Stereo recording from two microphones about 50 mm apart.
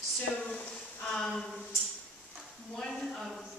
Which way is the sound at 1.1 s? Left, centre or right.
Centre.